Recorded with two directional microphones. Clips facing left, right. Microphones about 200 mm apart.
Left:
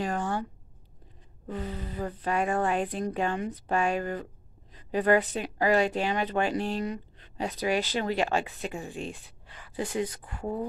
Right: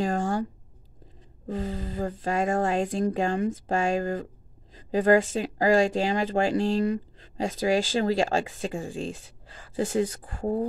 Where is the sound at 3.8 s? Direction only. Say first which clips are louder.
Right 3 dB; 45° right (ahead or behind).